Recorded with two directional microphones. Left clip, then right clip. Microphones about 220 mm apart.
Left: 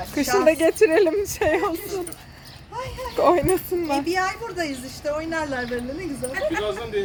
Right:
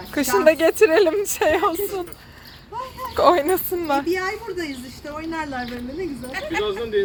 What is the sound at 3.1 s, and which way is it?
Speech, centre (ahead or behind).